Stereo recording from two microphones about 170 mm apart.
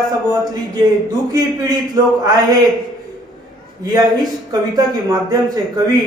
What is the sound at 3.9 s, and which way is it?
A man's voice, 25° right (ahead or behind).